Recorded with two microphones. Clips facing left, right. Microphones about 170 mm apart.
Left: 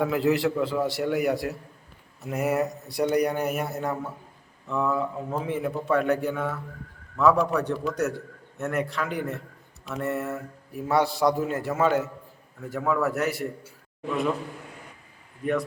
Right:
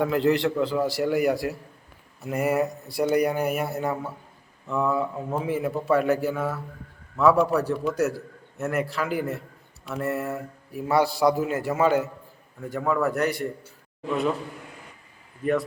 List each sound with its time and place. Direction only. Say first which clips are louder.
0.0 s a man's voice: right 1 dB; 5° left (ahead or behind)
15.4 s a man's voice: right 2 dB; centre (ahead or behind)